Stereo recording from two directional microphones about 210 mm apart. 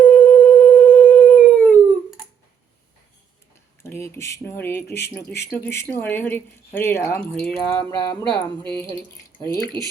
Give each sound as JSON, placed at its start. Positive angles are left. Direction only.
{"t": 0.0, "sound": "a sound", "side_deg": 5}
{"t": 3.8, "sound": "speech", "side_deg": 10}
{"t": 8.3, "sound": "speech", "side_deg": -20}
{"t": 8.8, "sound": "speech", "side_deg": 10}